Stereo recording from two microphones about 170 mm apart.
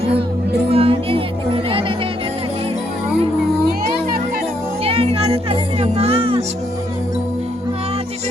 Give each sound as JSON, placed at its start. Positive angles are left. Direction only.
{"t": 0.7, "sound": "music", "side_deg": -35}
{"t": 4.8, "sound": "music", "side_deg": -35}